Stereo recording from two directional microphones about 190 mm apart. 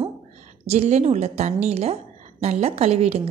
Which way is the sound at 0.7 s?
35° right (ahead or behind).